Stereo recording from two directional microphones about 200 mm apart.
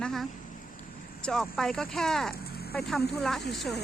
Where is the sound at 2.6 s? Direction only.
50° left (ahead or behind).